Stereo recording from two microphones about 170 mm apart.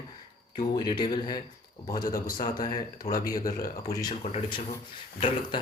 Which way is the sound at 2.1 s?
55° left (ahead or behind).